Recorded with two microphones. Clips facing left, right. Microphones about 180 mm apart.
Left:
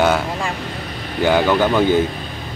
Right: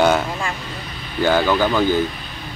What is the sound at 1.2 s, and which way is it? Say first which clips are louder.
Speech: left 2 dB; 15° left (ahead or behind).